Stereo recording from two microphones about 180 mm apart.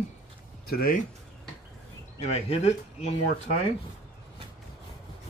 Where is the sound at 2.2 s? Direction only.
35° left (ahead or behind).